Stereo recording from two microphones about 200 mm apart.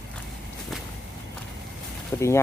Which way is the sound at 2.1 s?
15° left (ahead or behind).